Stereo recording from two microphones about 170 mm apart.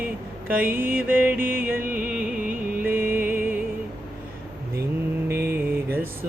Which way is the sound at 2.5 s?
55° right (ahead or behind).